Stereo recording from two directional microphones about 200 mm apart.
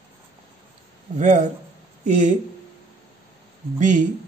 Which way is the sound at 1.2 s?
35° right (ahead or behind).